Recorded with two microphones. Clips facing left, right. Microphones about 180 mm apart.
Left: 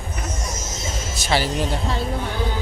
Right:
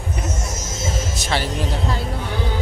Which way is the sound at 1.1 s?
5° left (ahead or behind).